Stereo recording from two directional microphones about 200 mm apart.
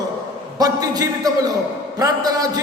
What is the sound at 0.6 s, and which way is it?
A man's voice, 20° right (ahead or behind).